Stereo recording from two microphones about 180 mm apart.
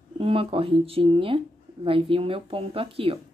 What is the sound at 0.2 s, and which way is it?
Speech, 30° right (ahead or behind).